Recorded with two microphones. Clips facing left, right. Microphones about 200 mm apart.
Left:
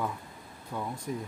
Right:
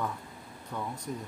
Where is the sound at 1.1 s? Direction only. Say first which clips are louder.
Left 4 dB; 10° left (ahead or behind).